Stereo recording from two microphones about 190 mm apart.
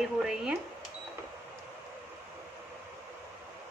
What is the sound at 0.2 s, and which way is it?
Speech, 5° right (ahead or behind).